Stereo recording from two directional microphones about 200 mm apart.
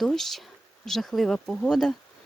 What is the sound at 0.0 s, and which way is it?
Speech, centre (ahead or behind).